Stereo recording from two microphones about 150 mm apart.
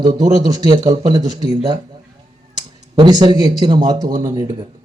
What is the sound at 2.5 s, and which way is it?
Speech, 30° right (ahead or behind).